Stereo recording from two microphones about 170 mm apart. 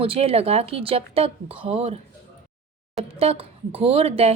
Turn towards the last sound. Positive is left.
turn(degrees=-35)  # may be behind; listen again after turning